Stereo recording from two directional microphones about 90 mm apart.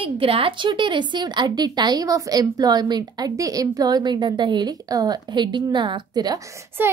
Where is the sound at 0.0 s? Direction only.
90° right; by 6.4 s 50° right (ahead or behind).